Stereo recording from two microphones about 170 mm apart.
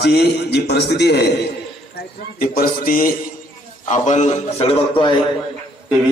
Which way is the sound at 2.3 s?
55° left (ahead or behind).